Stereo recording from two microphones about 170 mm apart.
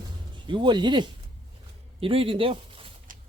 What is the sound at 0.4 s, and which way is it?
A man's voice, 25° right (ahead or behind).